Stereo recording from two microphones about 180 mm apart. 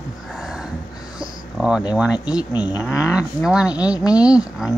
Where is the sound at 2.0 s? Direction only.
5° right (ahead or behind).